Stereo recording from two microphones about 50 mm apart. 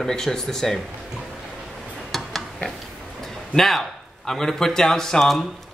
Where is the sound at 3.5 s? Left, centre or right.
Centre.